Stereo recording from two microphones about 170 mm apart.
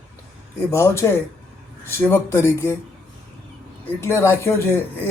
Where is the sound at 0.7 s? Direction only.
15° left (ahead or behind).